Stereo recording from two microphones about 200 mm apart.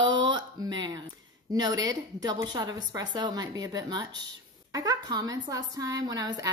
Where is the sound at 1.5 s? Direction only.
20° right (ahead or behind).